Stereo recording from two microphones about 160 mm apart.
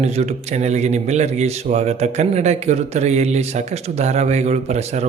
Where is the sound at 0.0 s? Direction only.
45° right (ahead or behind).